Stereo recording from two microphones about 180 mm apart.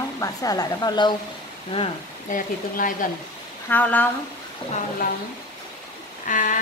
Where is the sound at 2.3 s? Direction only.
50° left (ahead or behind).